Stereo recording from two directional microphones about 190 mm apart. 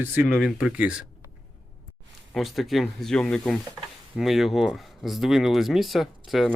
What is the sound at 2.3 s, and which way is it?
Speech, centre (ahead or behind).